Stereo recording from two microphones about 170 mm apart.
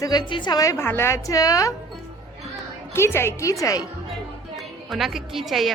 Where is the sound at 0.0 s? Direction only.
25° left (ahead or behind).